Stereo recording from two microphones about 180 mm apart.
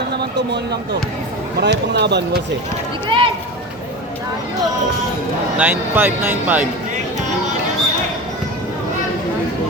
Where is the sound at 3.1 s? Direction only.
30° right (ahead or behind).